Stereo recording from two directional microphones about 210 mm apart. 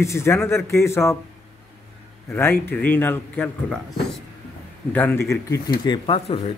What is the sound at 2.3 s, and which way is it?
Speech, 10° left (ahead or behind).